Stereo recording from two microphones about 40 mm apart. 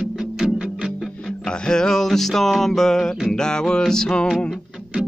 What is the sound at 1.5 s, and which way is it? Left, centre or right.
Music, left.